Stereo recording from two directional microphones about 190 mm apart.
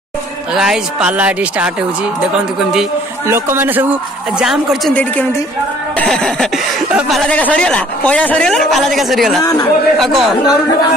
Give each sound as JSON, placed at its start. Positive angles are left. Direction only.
{"t": 0.6, "sound": "speech", "side_deg": -5}
{"t": 9.4, "sound": "speech", "side_deg": 20}
{"t": 9.9, "sound": "speech", "side_deg": 0}
{"t": 10.4, "sound": "speech", "side_deg": 20}